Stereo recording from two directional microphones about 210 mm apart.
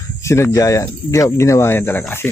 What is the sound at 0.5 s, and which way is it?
Speech, 15° left (ahead or behind).